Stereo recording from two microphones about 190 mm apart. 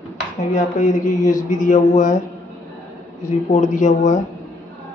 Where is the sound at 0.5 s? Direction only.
40° left (ahead or behind).